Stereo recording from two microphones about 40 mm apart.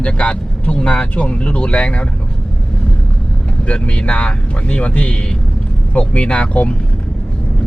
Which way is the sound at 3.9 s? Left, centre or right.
Left.